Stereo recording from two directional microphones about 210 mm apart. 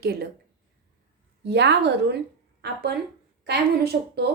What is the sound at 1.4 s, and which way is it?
A woman's voice, 55° right (ahead or behind).